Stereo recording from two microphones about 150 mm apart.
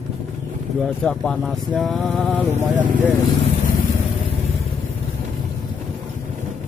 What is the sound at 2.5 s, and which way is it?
Speech, 15° right (ahead or behind).